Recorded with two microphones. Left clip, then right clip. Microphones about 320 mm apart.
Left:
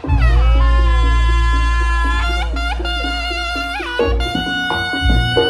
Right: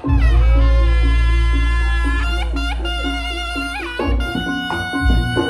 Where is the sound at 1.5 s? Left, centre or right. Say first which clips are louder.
Left 3 dB; centre.